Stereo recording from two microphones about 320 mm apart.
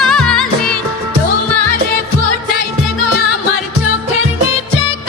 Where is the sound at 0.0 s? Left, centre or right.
Centre.